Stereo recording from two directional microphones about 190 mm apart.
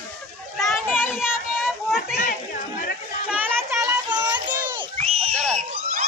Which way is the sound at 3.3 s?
10° right (ahead or behind).